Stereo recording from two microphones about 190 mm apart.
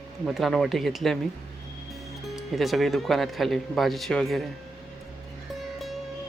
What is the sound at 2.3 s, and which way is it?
Speech, centre (ahead or behind).